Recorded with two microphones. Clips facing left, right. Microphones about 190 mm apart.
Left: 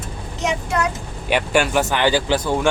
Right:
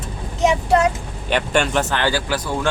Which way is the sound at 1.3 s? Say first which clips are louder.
Left 1 dB; 10° left (ahead or behind).